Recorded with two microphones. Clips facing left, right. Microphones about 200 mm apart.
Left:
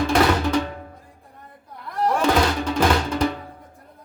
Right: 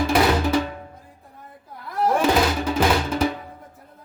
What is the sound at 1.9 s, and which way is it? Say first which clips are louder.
Music: right 1 dB; 5° right (ahead or behind).